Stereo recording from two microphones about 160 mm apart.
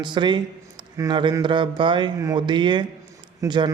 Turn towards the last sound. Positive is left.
turn(degrees=-30)  # may be behind; listen again after turning